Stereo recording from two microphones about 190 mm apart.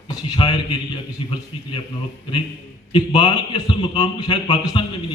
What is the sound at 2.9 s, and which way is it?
A man's voice, 20° left (ahead or behind).